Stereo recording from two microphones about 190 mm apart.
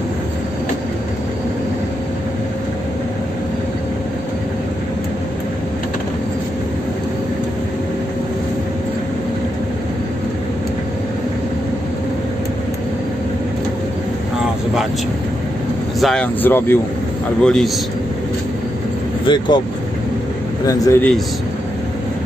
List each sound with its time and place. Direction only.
16.0 s a man's voice: 5° left (ahead or behind)
19.2 s speech: 25° left (ahead or behind)
20.6 s speech: 15° left (ahead or behind)